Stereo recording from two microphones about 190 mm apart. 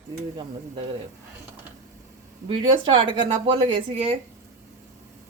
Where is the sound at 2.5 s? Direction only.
25° right (ahead or behind).